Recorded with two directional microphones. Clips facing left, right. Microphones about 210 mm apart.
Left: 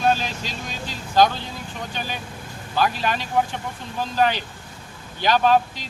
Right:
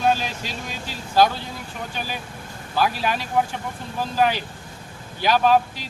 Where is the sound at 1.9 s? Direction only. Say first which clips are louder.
Even; 5° right (ahead or behind).